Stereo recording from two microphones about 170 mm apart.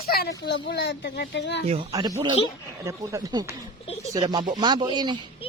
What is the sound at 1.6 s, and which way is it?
Speech, 40° right (ahead or behind).